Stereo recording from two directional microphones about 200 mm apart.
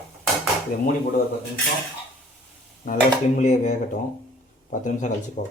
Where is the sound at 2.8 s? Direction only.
40° left (ahead or behind).